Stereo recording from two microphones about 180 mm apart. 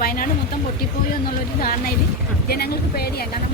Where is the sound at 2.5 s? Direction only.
60° left (ahead or behind).